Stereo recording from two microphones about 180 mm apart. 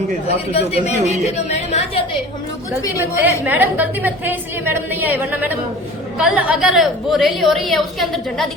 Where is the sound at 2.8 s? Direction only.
15° left (ahead or behind).